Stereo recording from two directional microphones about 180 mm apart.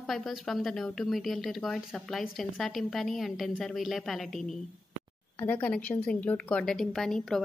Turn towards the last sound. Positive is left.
turn(degrees=5)  # may be behind; listen again after turning